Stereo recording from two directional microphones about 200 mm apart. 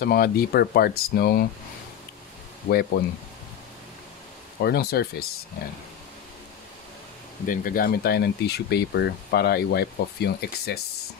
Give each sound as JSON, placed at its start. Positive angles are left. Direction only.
{"t": 0.0, "sound": "speech", "side_deg": 50}
{"t": 2.7, "sound": "speech", "side_deg": 55}
{"t": 4.6, "sound": "speech", "side_deg": 55}
{"t": 7.4, "sound": "speech", "side_deg": 45}